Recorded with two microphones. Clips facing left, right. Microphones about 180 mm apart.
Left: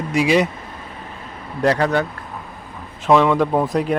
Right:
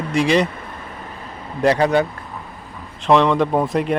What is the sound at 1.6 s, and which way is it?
Speech, 10° right (ahead or behind).